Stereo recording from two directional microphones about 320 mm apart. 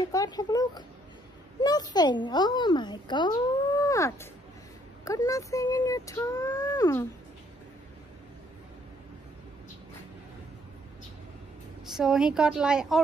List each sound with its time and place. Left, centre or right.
0.1 s speech: centre
11.8 s a woman's voice: centre